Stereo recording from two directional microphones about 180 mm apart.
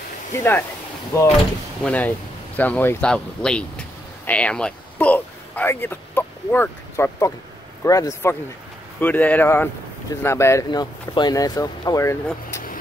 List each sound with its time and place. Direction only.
0.4 s speech: 10° left (ahead or behind)